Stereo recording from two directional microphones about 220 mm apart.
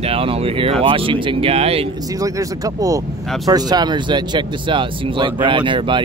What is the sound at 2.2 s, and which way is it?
Speech, 15° right (ahead or behind).